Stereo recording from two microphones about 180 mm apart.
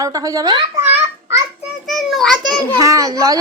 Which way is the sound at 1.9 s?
Centre (ahead or behind).